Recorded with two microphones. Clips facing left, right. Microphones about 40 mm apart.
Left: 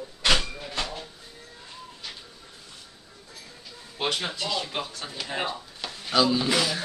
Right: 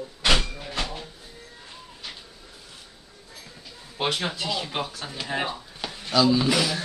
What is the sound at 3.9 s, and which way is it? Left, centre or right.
Speech, centre.